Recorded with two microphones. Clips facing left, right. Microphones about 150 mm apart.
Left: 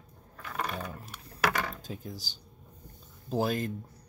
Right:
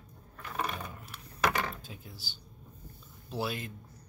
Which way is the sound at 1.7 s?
40° left (ahead or behind).